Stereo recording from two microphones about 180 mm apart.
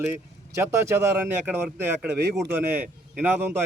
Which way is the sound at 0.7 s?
15° right (ahead or behind).